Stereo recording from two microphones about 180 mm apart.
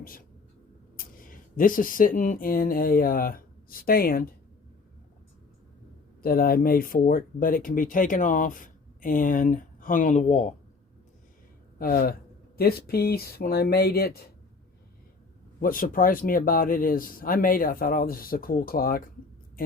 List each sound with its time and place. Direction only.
0.0 s speech: 50° left (ahead or behind)
6.2 s speech: 55° left (ahead or behind)
11.8 s speech: 55° left (ahead or behind)
15.6 s speech: 50° left (ahead or behind)